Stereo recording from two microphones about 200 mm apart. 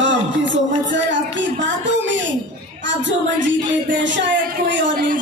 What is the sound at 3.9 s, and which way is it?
Speech, 65° right (ahead or behind).